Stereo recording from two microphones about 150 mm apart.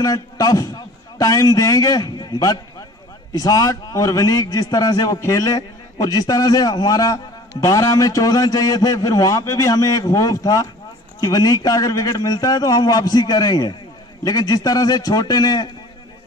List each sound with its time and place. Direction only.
0.0 s a man's voice: 25° left (ahead or behind)